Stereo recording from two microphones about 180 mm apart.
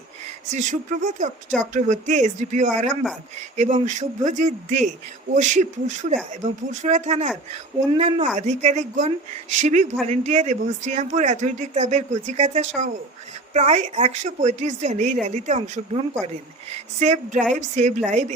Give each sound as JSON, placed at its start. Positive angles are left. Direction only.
{"t": 0.4, "sound": "speech", "side_deg": -40}